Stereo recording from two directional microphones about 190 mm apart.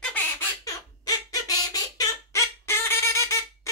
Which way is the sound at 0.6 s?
20° left (ahead or behind).